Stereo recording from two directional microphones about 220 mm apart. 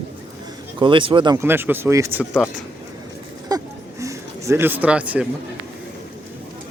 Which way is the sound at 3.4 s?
15° right (ahead or behind).